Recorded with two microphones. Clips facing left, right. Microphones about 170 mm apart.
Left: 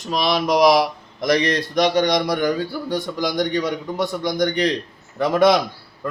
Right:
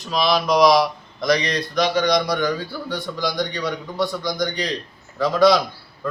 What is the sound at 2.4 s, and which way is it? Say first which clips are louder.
A man's voice: left 2 dB; 45° left (ahead or behind).